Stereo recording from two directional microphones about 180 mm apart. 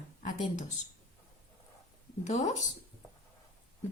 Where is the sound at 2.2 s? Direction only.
40° left (ahead or behind).